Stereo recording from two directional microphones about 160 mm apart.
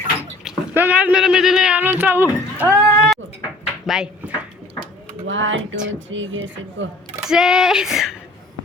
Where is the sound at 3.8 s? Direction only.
5° right (ahead or behind).